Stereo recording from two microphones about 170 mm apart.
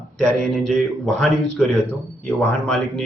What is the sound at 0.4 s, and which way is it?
Speech, centre (ahead or behind).